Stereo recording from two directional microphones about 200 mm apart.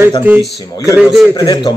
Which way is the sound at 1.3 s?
20° left (ahead or behind).